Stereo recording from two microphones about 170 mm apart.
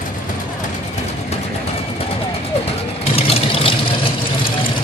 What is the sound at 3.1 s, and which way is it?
Vehicle, 35° left (ahead or behind).